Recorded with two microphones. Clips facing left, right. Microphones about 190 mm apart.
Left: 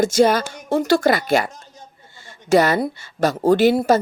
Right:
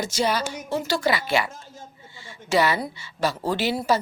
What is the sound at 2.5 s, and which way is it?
Speech, 45° left (ahead or behind).